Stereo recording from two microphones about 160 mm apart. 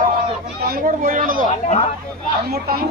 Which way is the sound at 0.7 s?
65° right (ahead or behind).